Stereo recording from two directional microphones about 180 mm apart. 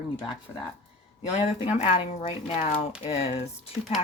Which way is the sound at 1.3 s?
35° left (ahead or behind).